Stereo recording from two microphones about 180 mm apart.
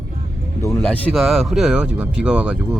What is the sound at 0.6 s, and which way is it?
Vehicle, 15° left (ahead or behind).